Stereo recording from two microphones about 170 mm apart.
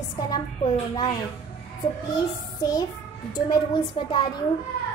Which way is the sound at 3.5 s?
25° left (ahead or behind).